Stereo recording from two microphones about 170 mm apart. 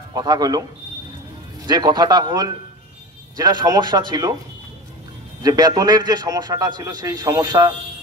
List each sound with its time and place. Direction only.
0.1 s a man's voice: 25° right (ahead or behind)
1.7 s a man's voice: 25° right (ahead or behind)
5.4 s a man's voice: 20° right (ahead or behind)